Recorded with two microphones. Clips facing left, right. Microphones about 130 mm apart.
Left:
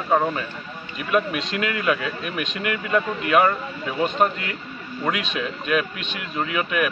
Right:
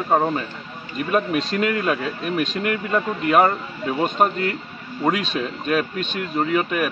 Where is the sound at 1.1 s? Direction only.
40° right (ahead or behind).